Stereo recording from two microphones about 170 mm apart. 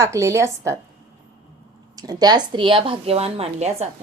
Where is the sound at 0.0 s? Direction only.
15° right (ahead or behind).